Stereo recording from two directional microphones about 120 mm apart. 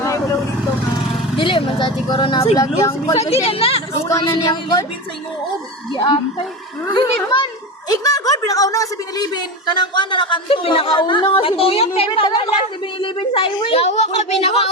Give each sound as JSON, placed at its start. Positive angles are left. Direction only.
{"t": 1.4, "sound": "a woman's voice", "side_deg": 45}
{"t": 2.6, "sound": "speech", "side_deg": 30}
{"t": 3.2, "sound": "a woman's voice", "side_deg": 55}
{"t": 4.2, "sound": "a woman's voice", "side_deg": 30}
{"t": 5.9, "sound": "a woman's voice", "side_deg": 40}